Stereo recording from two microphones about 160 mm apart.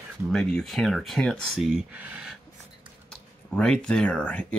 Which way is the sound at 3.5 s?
5° left (ahead or behind).